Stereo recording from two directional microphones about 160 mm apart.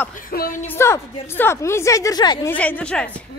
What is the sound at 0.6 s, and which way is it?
A woman's voice, 15° left (ahead or behind).